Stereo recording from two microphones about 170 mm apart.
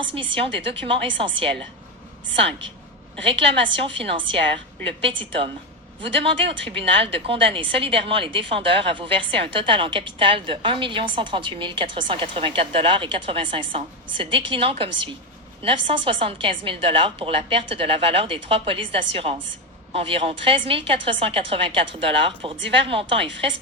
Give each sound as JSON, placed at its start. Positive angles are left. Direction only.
{"t": 0.1, "sound": "a woman's voice", "side_deg": -30}